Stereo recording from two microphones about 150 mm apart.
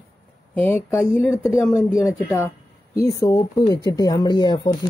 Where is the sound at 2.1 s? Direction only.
15° left (ahead or behind).